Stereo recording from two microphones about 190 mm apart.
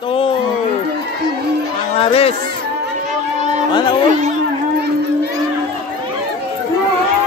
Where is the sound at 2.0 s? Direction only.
30° left (ahead or behind).